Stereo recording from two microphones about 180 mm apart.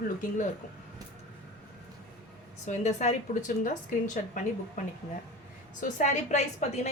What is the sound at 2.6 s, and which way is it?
A woman's voice, 40° left (ahead or behind).